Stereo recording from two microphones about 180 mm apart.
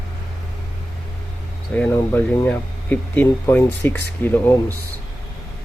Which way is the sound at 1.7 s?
10° left (ahead or behind).